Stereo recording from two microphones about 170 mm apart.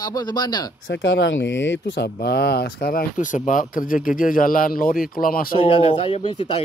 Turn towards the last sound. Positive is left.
turn(degrees=35)  # may be behind; listen again after turning